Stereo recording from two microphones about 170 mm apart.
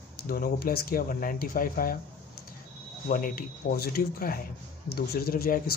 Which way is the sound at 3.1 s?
55° left (ahead or behind).